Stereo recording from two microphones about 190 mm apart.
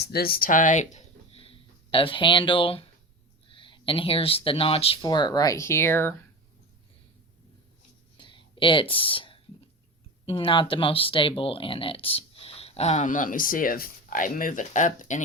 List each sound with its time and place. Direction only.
0.0 s speech: 55° left (ahead or behind); by 6.1 s 10° left (ahead or behind)
8.2 s whispering: 25° left (ahead or behind)
10.2 s speech: 25° left (ahead or behind)